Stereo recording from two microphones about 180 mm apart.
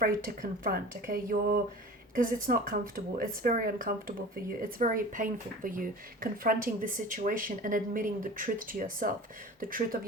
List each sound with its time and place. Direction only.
0.6 s speech: 50° right (ahead or behind)